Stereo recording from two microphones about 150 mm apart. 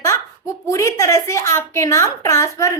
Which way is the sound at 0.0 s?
20° left (ahead or behind).